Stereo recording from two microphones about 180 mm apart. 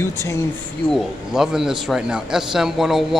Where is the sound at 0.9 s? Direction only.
5° right (ahead or behind).